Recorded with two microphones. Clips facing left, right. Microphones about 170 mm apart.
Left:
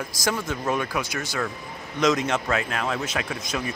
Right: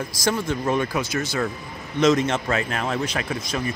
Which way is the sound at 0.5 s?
5° left (ahead or behind).